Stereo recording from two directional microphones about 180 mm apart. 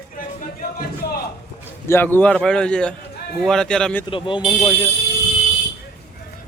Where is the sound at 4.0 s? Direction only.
30° left (ahead or behind).